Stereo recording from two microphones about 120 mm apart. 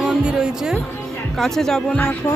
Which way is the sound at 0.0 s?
5° right (ahead or behind).